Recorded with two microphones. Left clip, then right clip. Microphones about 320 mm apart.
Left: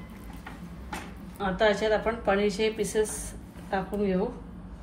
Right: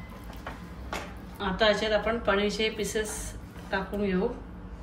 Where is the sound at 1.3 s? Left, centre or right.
Centre.